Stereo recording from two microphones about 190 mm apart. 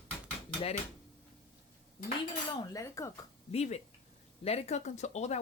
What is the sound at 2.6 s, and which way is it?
Cutlery, 15° left (ahead or behind).